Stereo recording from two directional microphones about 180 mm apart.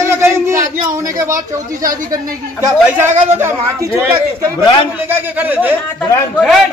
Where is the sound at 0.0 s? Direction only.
15° right (ahead or behind).